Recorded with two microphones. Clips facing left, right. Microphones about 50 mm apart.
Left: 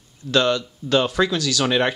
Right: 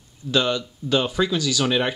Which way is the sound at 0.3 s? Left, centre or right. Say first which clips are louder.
Left 3 dB; centre.